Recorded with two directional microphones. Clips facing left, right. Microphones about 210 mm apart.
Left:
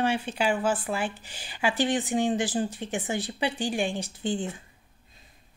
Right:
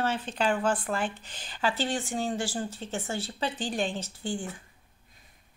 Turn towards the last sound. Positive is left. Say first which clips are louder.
# left 4 dB
turn(degrees=20)  # may be behind; listen again after turning